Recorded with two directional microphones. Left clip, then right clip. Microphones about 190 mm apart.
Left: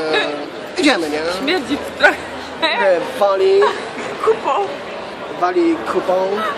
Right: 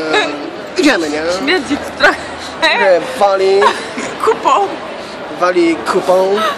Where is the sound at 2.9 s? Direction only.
30° right (ahead or behind).